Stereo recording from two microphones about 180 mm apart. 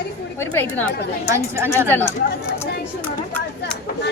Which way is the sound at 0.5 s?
10° left (ahead or behind).